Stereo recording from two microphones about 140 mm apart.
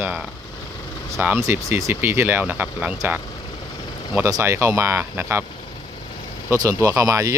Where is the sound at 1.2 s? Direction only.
15° right (ahead or behind).